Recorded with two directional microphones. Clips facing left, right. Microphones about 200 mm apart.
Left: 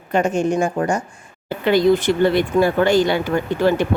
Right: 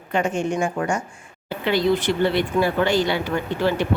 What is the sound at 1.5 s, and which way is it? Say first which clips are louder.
Speech: left 5 dB; 45° left (ahead or behind).